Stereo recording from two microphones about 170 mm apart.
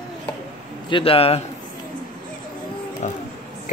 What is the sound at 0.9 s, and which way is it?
Mantra, 35° left (ahead or behind).